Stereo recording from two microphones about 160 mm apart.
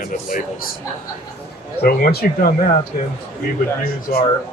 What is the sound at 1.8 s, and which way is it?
Speech, 70° left (ahead or behind).